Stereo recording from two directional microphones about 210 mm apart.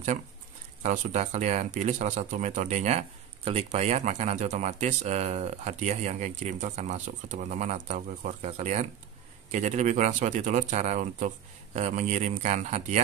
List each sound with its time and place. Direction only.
0.8 s speech: 35° right (ahead or behind)